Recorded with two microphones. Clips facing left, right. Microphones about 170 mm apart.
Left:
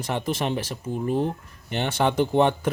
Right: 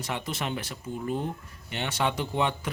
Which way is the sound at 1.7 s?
50° left (ahead or behind).